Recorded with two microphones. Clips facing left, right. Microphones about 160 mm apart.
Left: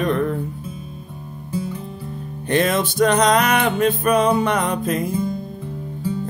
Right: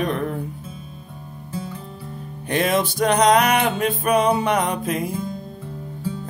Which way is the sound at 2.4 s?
10° right (ahead or behind).